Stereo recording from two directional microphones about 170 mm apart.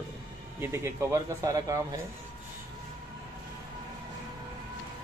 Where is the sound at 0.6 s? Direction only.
15° right (ahead or behind).